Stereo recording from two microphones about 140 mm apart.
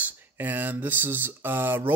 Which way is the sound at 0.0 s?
10° right (ahead or behind).